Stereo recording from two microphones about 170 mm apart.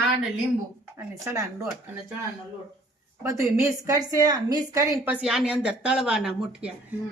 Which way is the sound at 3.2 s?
15° right (ahead or behind).